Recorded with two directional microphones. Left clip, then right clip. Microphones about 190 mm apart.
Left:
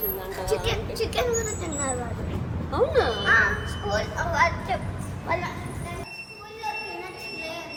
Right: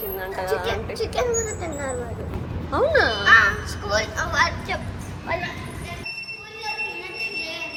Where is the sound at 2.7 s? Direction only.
40° right (ahead or behind).